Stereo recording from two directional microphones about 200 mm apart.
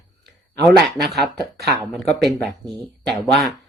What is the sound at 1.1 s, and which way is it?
Speech, 55° right (ahead or behind).